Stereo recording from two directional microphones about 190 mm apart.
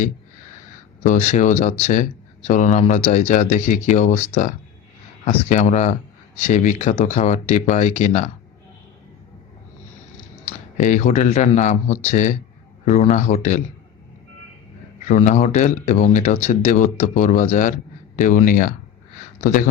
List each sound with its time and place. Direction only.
1.0 s speech: 45° left (ahead or behind)
10.8 s speech: 40° left (ahead or behind)
15.0 s speech: 40° left (ahead or behind)